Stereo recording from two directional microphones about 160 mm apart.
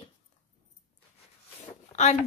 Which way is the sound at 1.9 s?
45° left (ahead or behind).